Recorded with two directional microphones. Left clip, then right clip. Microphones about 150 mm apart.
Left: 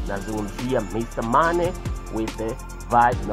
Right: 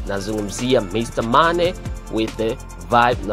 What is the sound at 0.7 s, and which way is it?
Speech, 35° right (ahead or behind).